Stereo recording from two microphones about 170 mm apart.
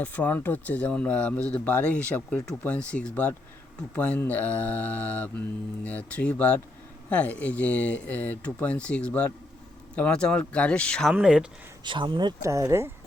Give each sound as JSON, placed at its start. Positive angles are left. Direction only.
{"t": 0.0, "sound": "speech", "side_deg": 10}
{"t": 11.1, "sound": "speech", "side_deg": -5}
{"t": 11.8, "sound": "speech", "side_deg": -25}